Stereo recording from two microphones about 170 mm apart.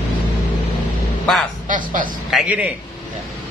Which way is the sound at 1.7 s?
50° right (ahead or behind).